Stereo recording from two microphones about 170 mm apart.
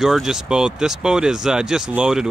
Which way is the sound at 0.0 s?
Centre (ahead or behind).